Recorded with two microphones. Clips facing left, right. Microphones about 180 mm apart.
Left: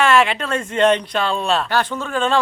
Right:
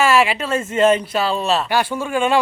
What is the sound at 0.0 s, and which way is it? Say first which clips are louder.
Speech: even; 5° right (ahead or behind).